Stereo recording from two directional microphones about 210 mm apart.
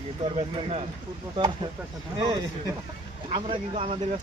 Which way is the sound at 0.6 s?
30° right (ahead or behind).